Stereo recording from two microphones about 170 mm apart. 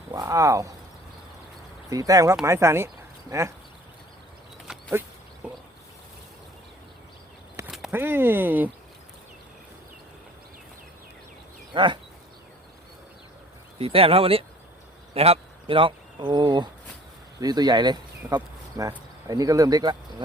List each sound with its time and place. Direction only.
0.1 s speech: 20° right (ahead or behind)
1.9 s speech: 20° right (ahead or behind)
4.7 s a sound: 10° right (ahead or behind)
7.9 s speech: 15° right (ahead or behind)
11.7 s speech: 30° right (ahead or behind)
13.7 s speech: 35° right (ahead or behind)